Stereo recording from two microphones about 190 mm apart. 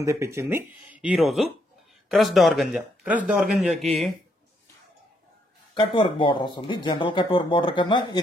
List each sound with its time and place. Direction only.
0.0 s speech: 15° right (ahead or behind); by 4.1 s centre (ahead or behind)
5.8 s speech: 25° left (ahead or behind)